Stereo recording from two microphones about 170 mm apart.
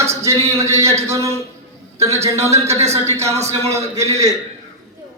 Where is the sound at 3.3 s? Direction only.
40° right (ahead or behind).